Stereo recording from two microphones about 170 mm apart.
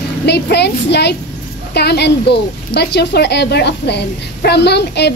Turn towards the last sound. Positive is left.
turn(degrees=80)